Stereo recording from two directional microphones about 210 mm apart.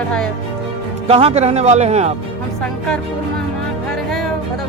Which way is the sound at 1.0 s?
30° right (ahead or behind).